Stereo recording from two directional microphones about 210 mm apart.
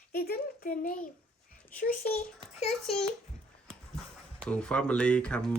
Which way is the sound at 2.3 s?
30° left (ahead or behind).